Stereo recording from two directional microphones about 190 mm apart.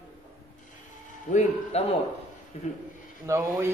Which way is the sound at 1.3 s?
40° left (ahead or behind).